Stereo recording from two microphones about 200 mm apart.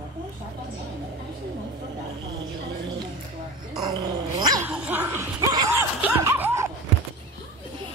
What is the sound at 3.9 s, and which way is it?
Dog, 20° right (ahead or behind).